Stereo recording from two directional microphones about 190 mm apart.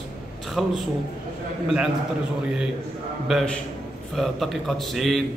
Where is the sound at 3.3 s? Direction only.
Centre (ahead or behind).